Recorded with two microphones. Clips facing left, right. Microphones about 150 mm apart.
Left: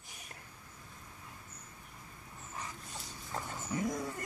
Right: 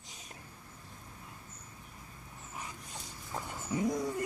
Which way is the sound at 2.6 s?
15° right (ahead or behind).